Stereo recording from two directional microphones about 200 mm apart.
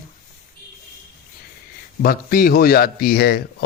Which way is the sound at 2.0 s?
50° left (ahead or behind).